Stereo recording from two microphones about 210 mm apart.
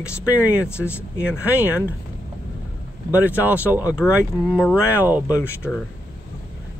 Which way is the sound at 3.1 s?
10° right (ahead or behind).